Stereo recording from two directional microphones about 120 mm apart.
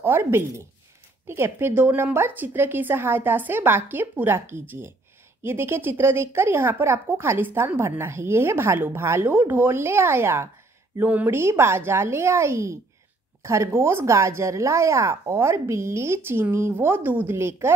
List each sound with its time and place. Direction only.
0.0 s speech: 20° right (ahead or behind)